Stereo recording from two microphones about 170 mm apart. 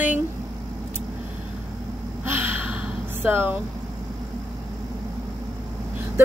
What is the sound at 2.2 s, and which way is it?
Gasp, 10° right (ahead or behind).